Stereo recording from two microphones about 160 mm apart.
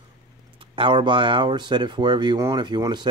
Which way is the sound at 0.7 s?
30° right (ahead or behind).